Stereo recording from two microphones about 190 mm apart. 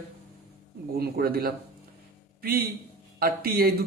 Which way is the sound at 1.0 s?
55° right (ahead or behind).